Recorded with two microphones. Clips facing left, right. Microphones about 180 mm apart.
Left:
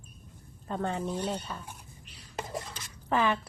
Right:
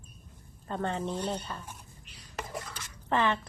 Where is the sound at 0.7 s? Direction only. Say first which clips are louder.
Even; 5° left (ahead or behind).